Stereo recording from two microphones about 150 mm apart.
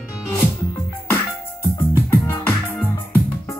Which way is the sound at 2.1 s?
15° left (ahead or behind).